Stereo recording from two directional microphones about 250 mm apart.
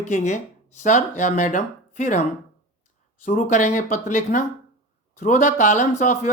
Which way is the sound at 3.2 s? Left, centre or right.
Left.